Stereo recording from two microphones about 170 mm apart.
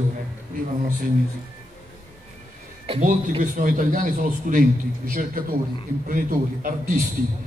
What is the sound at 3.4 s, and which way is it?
A man's voice, 50° right (ahead or behind).